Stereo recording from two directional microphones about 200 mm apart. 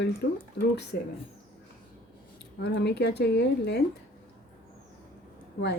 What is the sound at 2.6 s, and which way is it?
Speech, 60° left (ahead or behind).